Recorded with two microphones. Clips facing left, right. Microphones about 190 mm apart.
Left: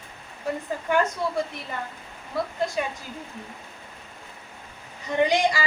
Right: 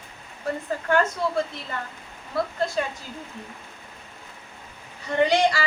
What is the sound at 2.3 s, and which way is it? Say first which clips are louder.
Speech: right 1 dB; 15° left (ahead or behind).